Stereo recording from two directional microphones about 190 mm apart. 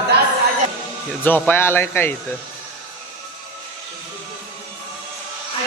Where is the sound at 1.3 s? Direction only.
10° left (ahead or behind).